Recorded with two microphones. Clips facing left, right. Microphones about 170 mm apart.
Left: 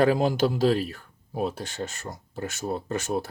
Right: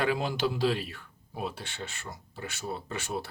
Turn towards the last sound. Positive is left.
turn(degrees=45)  # may be behind; listen again after turning